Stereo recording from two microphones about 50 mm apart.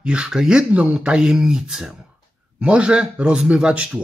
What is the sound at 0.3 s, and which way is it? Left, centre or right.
Speech, centre.